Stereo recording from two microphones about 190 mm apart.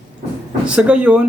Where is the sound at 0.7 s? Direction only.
5° right (ahead or behind).